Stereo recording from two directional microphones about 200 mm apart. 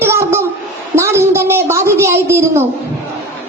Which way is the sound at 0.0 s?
15° right (ahead or behind).